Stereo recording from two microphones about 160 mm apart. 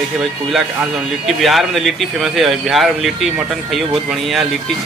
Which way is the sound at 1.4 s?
Centre (ahead or behind).